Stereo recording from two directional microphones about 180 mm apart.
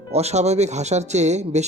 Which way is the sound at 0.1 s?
35° right (ahead or behind).